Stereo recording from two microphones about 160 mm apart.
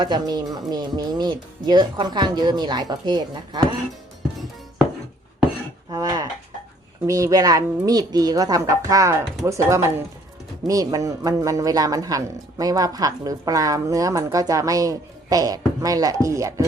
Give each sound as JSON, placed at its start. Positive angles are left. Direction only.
{"t": 0.0, "sound": "speech", "side_deg": -25}
{"t": 5.9, "sound": "speech", "side_deg": -25}